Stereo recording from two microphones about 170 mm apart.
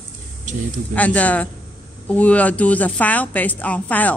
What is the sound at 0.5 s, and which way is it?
Speech, 45° right (ahead or behind).